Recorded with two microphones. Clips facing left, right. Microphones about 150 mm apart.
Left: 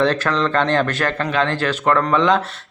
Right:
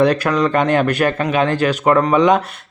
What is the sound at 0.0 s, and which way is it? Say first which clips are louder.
A man's voice: right 3 dB; 15° right (ahead or behind).